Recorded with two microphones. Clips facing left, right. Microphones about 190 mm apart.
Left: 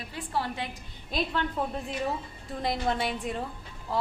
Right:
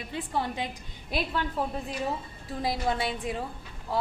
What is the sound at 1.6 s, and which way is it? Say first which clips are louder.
A woman's voice: even; 5° right (ahead or behind).